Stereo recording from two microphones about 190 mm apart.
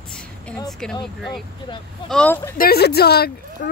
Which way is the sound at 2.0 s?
5° left (ahead or behind).